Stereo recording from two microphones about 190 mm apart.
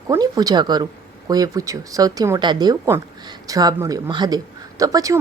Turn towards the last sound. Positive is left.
turn(degrees=-20)  # may be behind; listen again after turning